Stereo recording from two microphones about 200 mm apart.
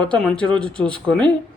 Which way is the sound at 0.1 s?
5° left (ahead or behind).